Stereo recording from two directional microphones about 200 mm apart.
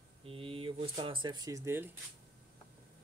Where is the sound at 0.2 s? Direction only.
30° right (ahead or behind); by 1.9 s 10° right (ahead or behind).